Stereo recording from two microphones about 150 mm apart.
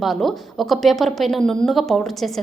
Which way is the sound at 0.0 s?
Centre (ahead or behind).